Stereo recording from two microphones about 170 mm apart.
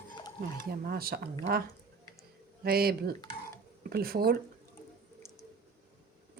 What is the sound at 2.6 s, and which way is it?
A woman's voice, 65° right (ahead or behind).